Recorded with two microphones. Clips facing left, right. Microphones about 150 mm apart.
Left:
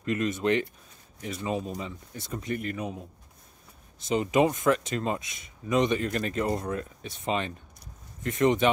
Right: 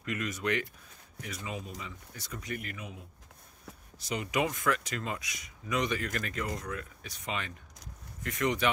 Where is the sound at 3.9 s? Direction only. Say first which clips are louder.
Left 8 dB; 25° left (ahead or behind).